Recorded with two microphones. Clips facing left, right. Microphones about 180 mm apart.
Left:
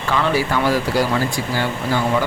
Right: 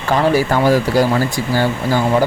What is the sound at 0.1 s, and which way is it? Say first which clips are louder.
Speech: right 5 dB; 45° right (ahead or behind).